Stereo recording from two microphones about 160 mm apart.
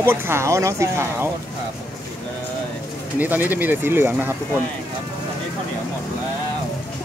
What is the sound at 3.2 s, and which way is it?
Speech, 10° right (ahead or behind).